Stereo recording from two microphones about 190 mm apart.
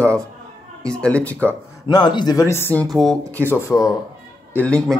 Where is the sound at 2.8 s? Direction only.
Centre (ahead or behind); by 3.9 s 15° left (ahead or behind).